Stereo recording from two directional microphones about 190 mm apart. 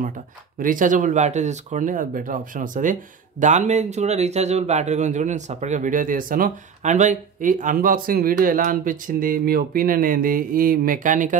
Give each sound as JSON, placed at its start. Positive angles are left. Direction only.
{"t": 0.6, "sound": "speech", "side_deg": -45}